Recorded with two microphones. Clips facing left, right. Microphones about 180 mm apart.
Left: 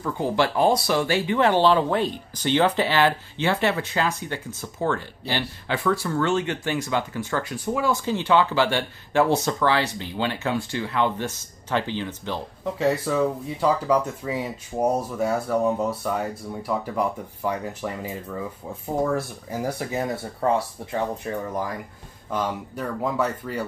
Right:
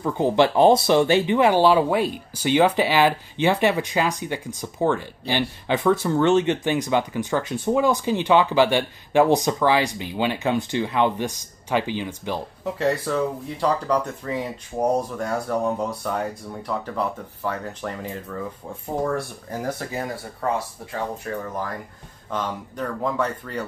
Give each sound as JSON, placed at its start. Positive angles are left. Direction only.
{"t": 0.0, "sound": "speech", "side_deg": -20}
{"t": 12.7, "sound": "speech", "side_deg": 0}
{"t": 22.3, "sound": "speech", "side_deg": 10}